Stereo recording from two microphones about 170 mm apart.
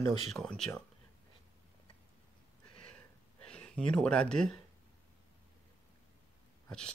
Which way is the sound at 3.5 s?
5° left (ahead or behind).